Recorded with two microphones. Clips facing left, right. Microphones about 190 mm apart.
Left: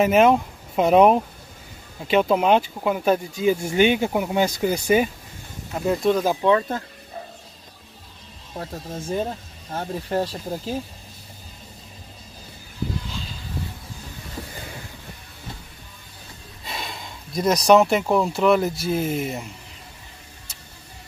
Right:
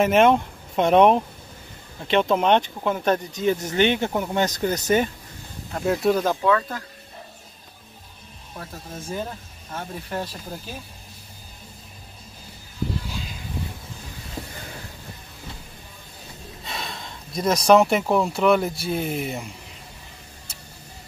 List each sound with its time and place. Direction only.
0.0 s speech: centre (ahead or behind)
5.8 s speech: 5° right (ahead or behind)
6.4 s speech: 25° left (ahead or behind)
8.5 s speech: 30° left (ahead or behind)
16.6 s speech: centre (ahead or behind)